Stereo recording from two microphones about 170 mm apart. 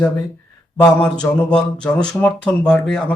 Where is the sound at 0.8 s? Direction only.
10° left (ahead or behind).